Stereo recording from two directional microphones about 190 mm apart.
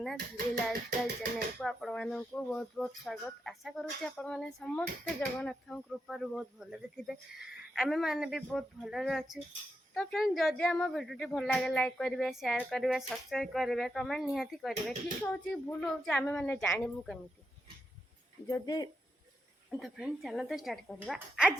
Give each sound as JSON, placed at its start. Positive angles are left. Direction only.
{"t": 0.5, "sound": "music", "side_deg": -50}
{"t": 1.5, "sound": "speech", "side_deg": 5}
{"t": 18.4, "sound": "speech", "side_deg": 20}
{"t": 19.8, "sound": "speech", "side_deg": 0}